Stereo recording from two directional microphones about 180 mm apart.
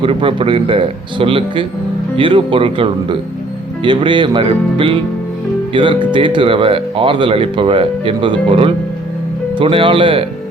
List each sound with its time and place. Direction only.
0.0 s speech: 30° right (ahead or behind)